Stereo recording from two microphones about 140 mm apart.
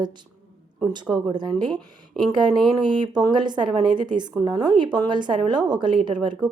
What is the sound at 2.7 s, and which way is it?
A woman's voice, 30° right (ahead or behind).